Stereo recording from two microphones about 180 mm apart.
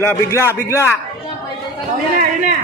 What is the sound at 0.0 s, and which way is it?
Speech, 15° left (ahead or behind).